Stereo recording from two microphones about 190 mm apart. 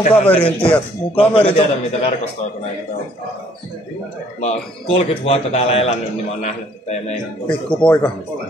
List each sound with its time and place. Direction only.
0.1 s a man's voice: 30° left (ahead or behind)
4.4 s a man's voice: 35° left (ahead or behind)
7.8 s speech: 5° left (ahead or behind)